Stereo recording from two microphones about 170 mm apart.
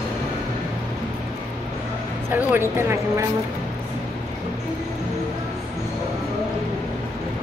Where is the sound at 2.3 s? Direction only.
10° right (ahead or behind).